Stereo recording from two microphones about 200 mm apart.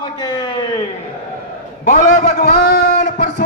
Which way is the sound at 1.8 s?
35° left (ahead or behind).